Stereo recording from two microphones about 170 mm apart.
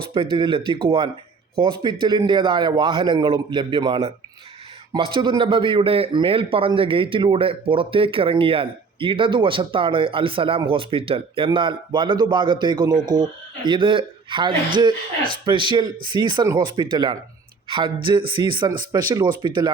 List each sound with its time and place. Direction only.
0.1 s a man's voice: 30° right (ahead or behind)